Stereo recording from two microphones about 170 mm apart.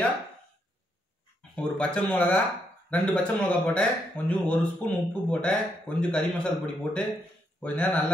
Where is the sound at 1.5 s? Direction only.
5° left (ahead or behind).